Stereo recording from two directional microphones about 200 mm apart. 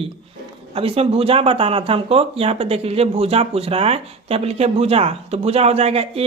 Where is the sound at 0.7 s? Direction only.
30° right (ahead or behind).